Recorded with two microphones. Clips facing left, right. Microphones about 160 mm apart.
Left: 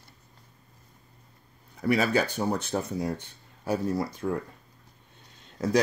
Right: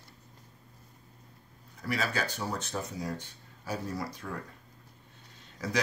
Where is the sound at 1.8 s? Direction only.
60° left (ahead or behind).